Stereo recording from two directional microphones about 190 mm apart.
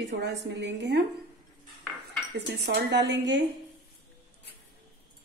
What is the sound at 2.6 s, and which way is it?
Speech, 60° right (ahead or behind).